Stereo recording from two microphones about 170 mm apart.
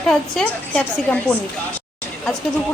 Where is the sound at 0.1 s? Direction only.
5° left (ahead or behind).